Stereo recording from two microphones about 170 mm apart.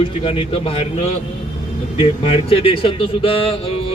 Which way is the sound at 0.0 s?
35° left (ahead or behind).